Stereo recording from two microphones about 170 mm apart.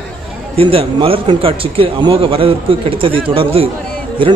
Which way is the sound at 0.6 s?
30° right (ahead or behind).